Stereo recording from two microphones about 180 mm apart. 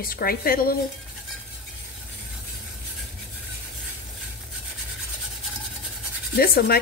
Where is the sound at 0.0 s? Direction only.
55° left (ahead or behind).